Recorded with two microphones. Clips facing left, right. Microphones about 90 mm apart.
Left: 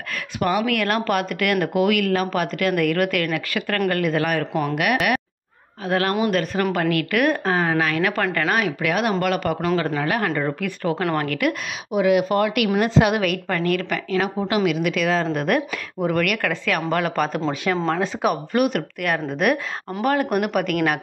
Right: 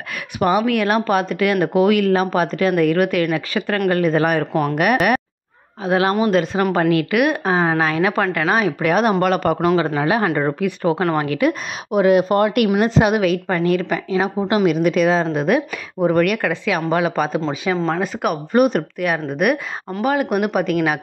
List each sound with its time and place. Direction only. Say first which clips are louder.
0.4 s speech: right 4 dB; 25° right (ahead or behind)
5.9 s speech: right 4 dB; 20° right (ahead or behind); by 9.6 s 40° right (ahead or behind)
9.8 s speech: right 4 dB; 20° right (ahead or behind)
11.9 s speech: right 4 dB; 45° right (ahead or behind)
12.8 s speech: right 3 dB; 20° right (ahead or behind); by 15.0 s 40° right (ahead or behind)
15.0 s speech: right 4 dB; 25° right (ahead or behind)
16.0 s speech: right 5 dB; 30° right (ahead or behind)
16.4 s speech: right 3 dB; 15° right (ahead or behind)
18.5 s speech: right 9 dB; 30° right (ahead or behind)
18.9 s speech: right 3 dB; 15° right (ahead or behind)